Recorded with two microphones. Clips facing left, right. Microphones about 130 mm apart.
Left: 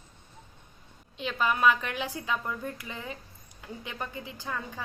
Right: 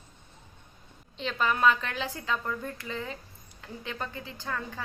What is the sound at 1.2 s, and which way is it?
A woman's voice, 10° left (ahead or behind).